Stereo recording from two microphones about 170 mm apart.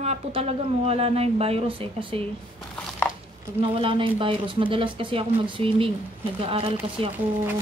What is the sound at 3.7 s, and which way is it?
Speech, 30° right (ahead or behind).